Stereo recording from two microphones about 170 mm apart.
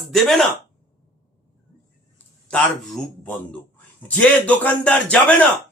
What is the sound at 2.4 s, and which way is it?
A man's voice, 5° left (ahead or behind).